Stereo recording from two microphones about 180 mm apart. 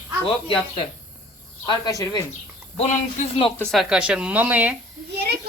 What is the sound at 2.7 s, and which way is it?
Speech, 30° left (ahead or behind).